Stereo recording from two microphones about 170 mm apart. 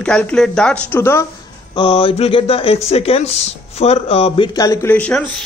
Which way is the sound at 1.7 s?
30° left (ahead or behind).